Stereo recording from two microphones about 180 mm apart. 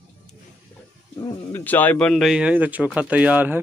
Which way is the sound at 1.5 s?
10° left (ahead or behind).